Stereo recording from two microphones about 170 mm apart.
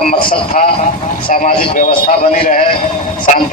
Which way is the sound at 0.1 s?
55° left (ahead or behind).